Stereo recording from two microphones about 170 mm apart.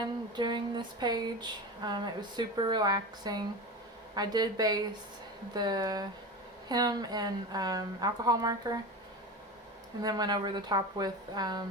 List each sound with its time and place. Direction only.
0.0 s speech: 25° right (ahead or behind)
10.0 s speech: 25° right (ahead or behind)